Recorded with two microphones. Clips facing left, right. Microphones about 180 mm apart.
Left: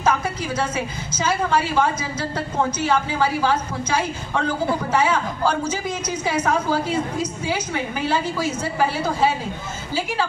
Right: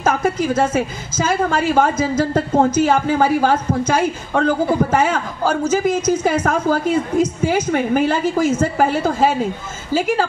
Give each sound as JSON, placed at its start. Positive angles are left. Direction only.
{"t": 0.0, "sound": "a woman's voice", "side_deg": -50}